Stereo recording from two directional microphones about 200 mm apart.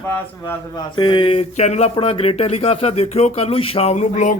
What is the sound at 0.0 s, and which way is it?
Speech, 10° left (ahead or behind).